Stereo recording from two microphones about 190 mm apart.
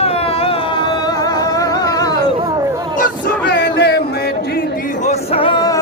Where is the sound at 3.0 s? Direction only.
55° left (ahead or behind).